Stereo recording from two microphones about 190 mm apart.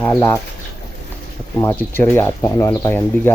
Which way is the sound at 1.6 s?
10° left (ahead or behind).